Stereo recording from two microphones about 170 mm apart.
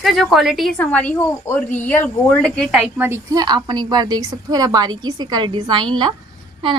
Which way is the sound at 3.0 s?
20° right (ahead or behind).